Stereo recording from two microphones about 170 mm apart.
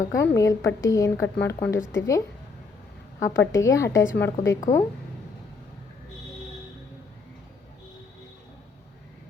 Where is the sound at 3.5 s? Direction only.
20° left (ahead or behind).